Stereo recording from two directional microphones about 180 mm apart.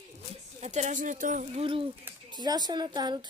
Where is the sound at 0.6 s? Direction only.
40° right (ahead or behind).